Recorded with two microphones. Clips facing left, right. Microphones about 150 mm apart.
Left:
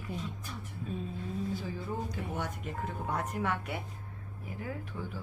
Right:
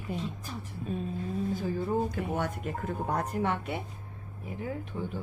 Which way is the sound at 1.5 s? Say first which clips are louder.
Right 7 dB; 50° right (ahead or behind).